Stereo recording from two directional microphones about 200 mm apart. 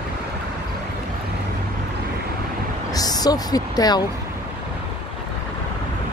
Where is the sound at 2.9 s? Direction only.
20° left (ahead or behind).